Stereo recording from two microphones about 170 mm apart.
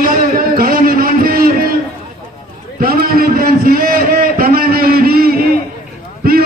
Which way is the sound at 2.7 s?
60° right (ahead or behind).